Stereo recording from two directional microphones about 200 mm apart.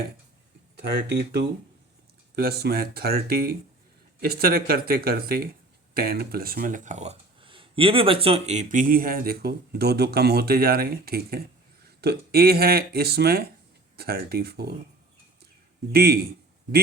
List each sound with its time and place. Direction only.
0.9 s speech: 55° right (ahead or behind)
15.9 s speech: 50° right (ahead or behind)